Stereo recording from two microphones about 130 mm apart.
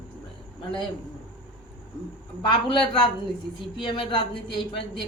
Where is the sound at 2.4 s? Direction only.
40° left (ahead or behind).